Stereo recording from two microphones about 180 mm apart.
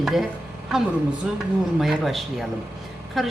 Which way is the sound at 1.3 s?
5° right (ahead or behind).